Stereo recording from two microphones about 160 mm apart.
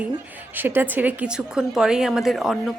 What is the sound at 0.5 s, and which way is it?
A woman's voice, 15° right (ahead or behind).